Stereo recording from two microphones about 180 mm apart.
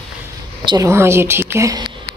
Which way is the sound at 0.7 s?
20° right (ahead or behind).